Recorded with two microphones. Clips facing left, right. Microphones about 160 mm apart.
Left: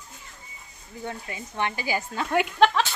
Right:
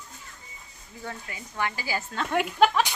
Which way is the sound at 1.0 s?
25° left (ahead or behind).